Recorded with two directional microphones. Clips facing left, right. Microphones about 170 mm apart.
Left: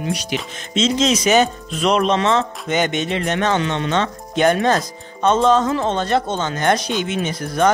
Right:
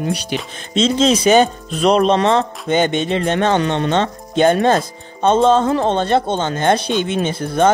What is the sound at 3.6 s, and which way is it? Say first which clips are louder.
Speech: right 4 dB; 45° right (ahead or behind).